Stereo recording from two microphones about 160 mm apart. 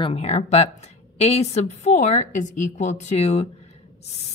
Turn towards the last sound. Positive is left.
turn(degrees=40)  # may be behind; listen again after turning